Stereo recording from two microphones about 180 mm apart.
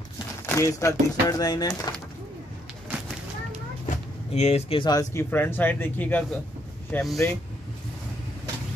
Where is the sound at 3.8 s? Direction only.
35° left (ahead or behind); by 7.1 s 10° left (ahead or behind).